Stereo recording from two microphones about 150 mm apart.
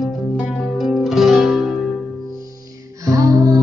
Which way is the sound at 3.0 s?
25° right (ahead or behind).